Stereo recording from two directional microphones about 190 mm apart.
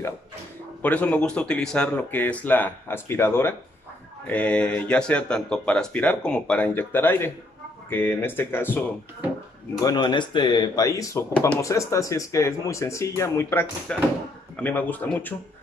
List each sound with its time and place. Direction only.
0.8 s speech: 5° left (ahead or behind)
9.8 s speech: 25° left (ahead or behind)
11.3 s speech: 5° left (ahead or behind)